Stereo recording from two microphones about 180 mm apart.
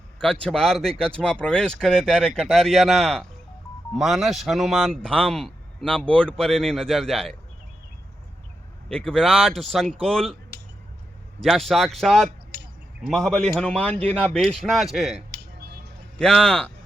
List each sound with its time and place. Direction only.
0.4 s speech: 5° left (ahead or behind)
8.9 s speech: 5° left (ahead or behind)
11.3 s speech: centre (ahead or behind)
12.5 s a sound: 60° right (ahead or behind)
13.1 s speech: 5° left (ahead or behind)